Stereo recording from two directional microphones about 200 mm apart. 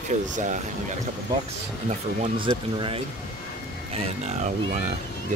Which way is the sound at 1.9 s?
35° right (ahead or behind).